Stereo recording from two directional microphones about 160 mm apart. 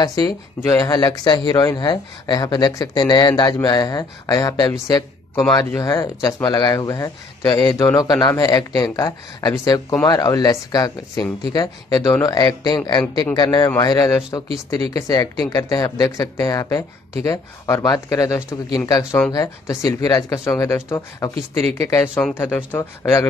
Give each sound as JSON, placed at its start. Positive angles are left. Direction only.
{"t": 0.0, "sound": "speech", "side_deg": 25}